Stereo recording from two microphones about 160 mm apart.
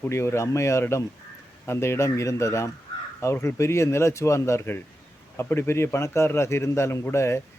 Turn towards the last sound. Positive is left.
turn(degrees=15)  # may be behind; listen again after turning